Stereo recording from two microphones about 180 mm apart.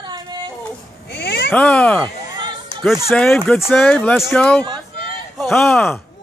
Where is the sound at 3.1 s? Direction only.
5° left (ahead or behind).